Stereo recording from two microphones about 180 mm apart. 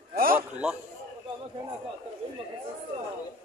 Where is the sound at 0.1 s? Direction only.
55° right (ahead or behind).